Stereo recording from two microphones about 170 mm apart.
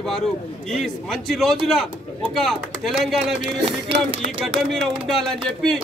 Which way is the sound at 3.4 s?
30° right (ahead or behind).